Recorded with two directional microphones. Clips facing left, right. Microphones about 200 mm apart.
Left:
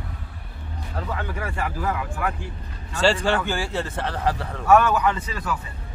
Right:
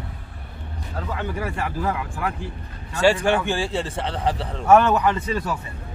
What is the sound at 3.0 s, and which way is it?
A man's voice, 15° right (ahead or behind).